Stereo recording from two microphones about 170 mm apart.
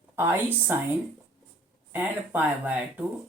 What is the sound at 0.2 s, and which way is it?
Speech, 10° right (ahead or behind).